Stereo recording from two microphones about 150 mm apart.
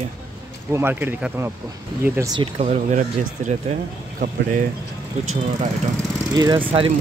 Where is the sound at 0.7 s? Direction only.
15° right (ahead or behind).